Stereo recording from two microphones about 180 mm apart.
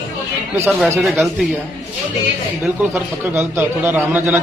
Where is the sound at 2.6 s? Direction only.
5° right (ahead or behind).